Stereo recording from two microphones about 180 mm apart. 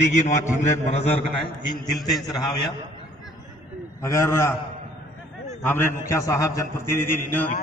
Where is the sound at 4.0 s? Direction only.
15° left (ahead or behind).